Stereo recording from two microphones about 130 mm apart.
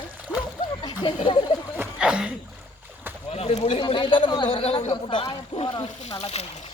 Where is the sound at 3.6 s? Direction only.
40° left (ahead or behind).